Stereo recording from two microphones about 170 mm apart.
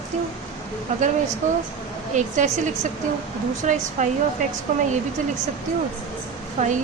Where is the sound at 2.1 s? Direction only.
45° right (ahead or behind).